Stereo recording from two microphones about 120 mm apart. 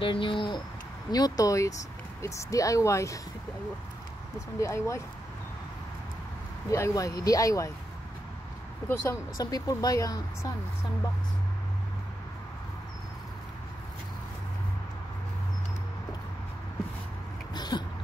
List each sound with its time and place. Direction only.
0.0 s speech: 45° left (ahead or behind)
1.1 s speech: 30° left (ahead or behind)
4.6 s speech: 25° left (ahead or behind)
6.7 s speech: 25° left (ahead or behind)
8.8 s speech: 20° left (ahead or behind)
17.6 s vehicle: 35° left (ahead or behind)